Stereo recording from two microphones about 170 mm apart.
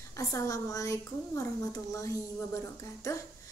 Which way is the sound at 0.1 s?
20° left (ahead or behind).